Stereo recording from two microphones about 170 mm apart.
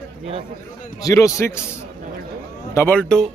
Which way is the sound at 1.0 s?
20° left (ahead or behind).